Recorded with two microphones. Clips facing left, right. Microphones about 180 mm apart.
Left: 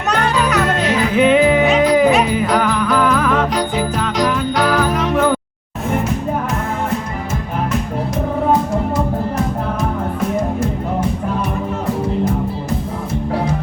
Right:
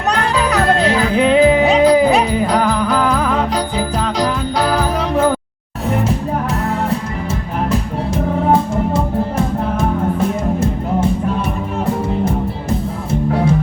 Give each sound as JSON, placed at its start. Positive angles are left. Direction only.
{"t": 0.2, "sound": "music", "side_deg": -35}